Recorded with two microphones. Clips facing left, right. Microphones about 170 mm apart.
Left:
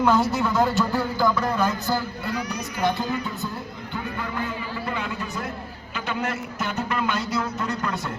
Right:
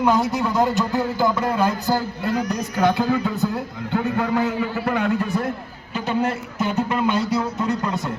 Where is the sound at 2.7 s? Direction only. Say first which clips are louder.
Right 6 dB; 70° right (ahead or behind).